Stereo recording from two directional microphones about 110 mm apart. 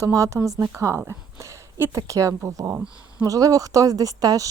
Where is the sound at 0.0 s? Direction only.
25° right (ahead or behind).